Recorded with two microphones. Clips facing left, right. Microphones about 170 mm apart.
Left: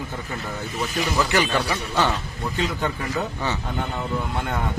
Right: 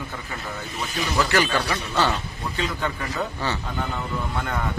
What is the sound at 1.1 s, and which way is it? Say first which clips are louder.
A man's voice: right 1 dB; 20° left (ahead or behind).